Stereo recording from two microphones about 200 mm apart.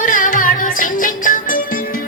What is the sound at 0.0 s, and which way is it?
Music, 40° left (ahead or behind).